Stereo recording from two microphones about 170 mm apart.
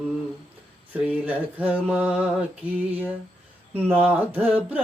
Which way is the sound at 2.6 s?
30° right (ahead or behind).